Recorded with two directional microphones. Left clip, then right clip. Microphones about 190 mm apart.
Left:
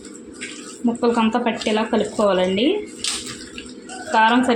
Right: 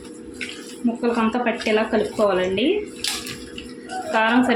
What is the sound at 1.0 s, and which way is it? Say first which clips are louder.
Speech: left 3 dB; 20° left (ahead or behind).